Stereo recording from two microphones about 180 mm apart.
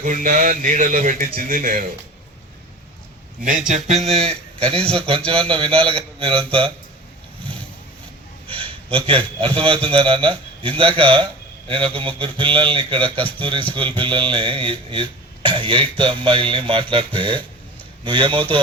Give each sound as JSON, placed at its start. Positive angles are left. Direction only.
{"t": 0.0, "sound": "a man's voice", "side_deg": -45}
{"t": 3.7, "sound": "a man's voice", "side_deg": -40}
{"t": 8.5, "sound": "a man's voice", "side_deg": -30}